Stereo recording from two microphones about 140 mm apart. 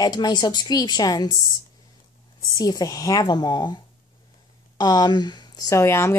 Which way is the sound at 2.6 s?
25° left (ahead or behind).